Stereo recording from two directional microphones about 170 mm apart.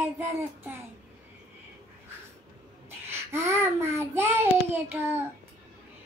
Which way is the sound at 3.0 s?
15° right (ahead or behind).